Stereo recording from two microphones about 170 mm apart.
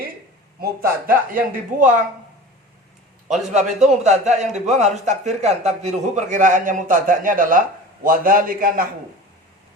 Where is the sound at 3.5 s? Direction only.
45° right (ahead or behind).